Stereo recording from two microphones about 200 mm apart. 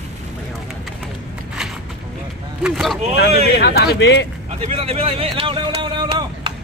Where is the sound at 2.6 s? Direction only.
Centre (ahead or behind).